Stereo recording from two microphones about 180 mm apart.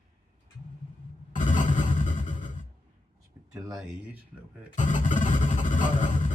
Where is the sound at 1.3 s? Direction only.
45° left (ahead or behind).